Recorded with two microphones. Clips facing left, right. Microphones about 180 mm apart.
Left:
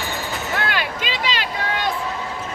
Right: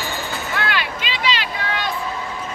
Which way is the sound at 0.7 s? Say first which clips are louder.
Left 1 dB; 45° left (ahead or behind).